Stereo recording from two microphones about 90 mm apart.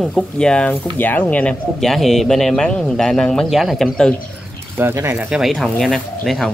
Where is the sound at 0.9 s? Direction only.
20° left (ahead or behind).